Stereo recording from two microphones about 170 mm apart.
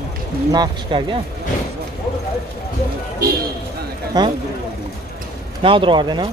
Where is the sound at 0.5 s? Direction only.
25° right (ahead or behind).